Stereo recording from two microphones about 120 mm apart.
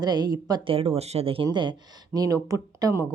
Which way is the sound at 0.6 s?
50° right (ahead or behind).